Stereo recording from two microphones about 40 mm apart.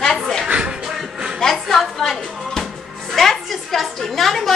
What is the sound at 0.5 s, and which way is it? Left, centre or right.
Music, right.